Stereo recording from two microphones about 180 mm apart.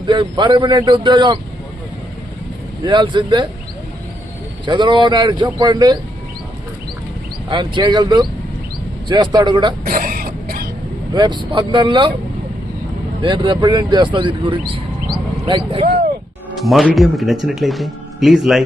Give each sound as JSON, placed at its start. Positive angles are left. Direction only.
{"t": 0.0, "sound": "speech", "side_deg": -25}
{"t": 2.8, "sound": "speech", "side_deg": -25}
{"t": 4.6, "sound": "speech", "side_deg": -25}
{"t": 7.5, "sound": "speech", "side_deg": -25}
{"t": 9.8, "sound": "throat clearing", "side_deg": -55}
{"t": 11.1, "sound": "speech", "side_deg": -25}
{"t": 13.2, "sound": "speech", "side_deg": -25}
{"t": 16.6, "sound": "speech", "side_deg": 0}